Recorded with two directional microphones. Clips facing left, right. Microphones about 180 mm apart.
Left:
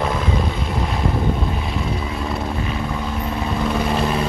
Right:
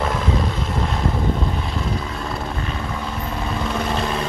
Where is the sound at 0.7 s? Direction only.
5° left (ahead or behind).